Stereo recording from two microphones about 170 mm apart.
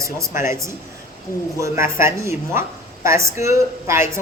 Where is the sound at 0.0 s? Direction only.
15° right (ahead or behind).